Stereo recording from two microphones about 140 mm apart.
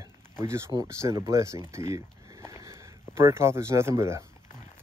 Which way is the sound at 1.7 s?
20° right (ahead or behind).